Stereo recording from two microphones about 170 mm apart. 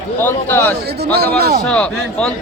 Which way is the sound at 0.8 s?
70° right (ahead or behind).